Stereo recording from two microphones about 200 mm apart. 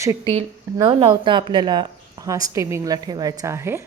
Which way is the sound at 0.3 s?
25° right (ahead or behind).